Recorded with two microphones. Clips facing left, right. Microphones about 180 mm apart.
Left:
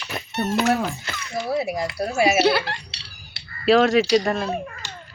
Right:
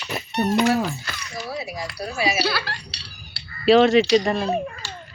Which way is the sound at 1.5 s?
55° left (ahead or behind).